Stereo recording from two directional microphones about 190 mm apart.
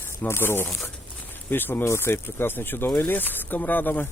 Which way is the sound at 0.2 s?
10° left (ahead or behind).